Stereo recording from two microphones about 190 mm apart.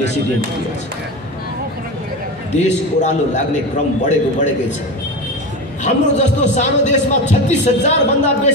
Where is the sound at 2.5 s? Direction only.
40° left (ahead or behind).